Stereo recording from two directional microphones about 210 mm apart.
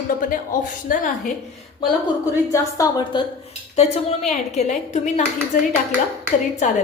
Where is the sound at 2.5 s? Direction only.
15° left (ahead or behind).